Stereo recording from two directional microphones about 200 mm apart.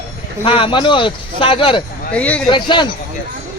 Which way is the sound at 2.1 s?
5° left (ahead or behind).